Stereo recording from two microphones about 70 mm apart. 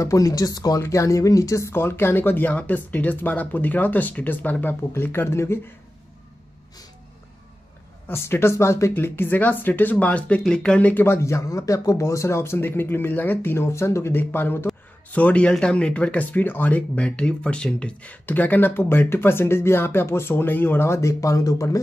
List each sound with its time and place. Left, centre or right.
0.0 s speech: left
0.7 s speech: left
8.1 s speech: left
8.9 s speech: left
11.1 s speech: left
15.0 s speech: centre
18.2 s speech: left